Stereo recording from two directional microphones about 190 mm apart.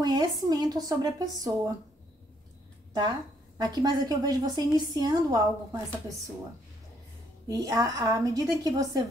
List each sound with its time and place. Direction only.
0.0 s a woman's voice: 20° right (ahead or behind)
2.9 s a woman's voice: 20° right (ahead or behind)
7.4 s a woman's voice: 20° right (ahead or behind)